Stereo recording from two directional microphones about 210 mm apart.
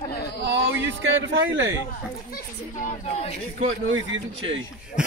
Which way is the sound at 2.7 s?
35° left (ahead or behind).